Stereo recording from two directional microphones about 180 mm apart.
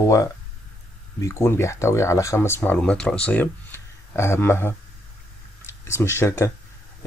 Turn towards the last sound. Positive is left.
turn(degrees=15)  # may be behind; listen again after turning